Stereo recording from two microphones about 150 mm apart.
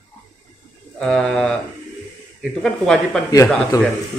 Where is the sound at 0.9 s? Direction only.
5° left (ahead or behind).